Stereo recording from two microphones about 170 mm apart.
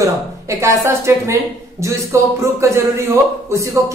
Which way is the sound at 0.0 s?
15° right (ahead or behind).